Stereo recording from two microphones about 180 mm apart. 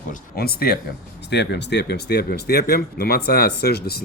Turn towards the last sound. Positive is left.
turn(degrees=60)  # may be behind; listen again after turning